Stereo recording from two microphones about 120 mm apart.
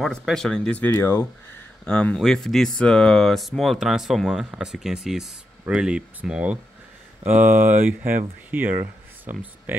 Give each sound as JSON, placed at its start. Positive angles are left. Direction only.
{"t": 0.0, "sound": "speech", "side_deg": 0}
{"t": 1.9, "sound": "speech", "side_deg": 10}